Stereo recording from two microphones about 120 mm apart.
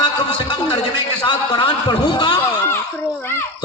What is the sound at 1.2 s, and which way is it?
A man's voice, 40° left (ahead or behind).